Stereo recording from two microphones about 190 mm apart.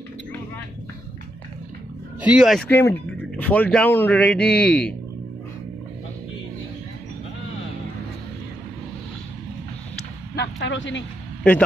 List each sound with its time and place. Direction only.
2.2 s speech: 5° right (ahead or behind)
2.7 s a man's voice: 10° left (ahead or behind)
10.3 s a sound: 65° left (ahead or behind)